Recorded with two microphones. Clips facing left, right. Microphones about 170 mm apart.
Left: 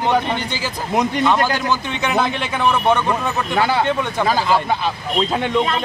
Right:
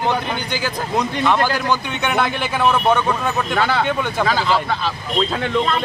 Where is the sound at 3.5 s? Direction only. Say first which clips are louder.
Left 3 dB; 10° left (ahead or behind).